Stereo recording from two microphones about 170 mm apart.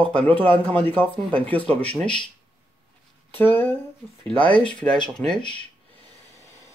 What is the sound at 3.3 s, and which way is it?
Speech, 10° left (ahead or behind).